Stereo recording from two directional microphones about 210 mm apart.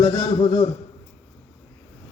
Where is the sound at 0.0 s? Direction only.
20° left (ahead or behind).